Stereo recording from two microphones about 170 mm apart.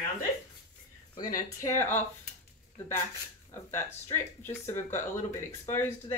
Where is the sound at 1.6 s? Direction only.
15° left (ahead or behind).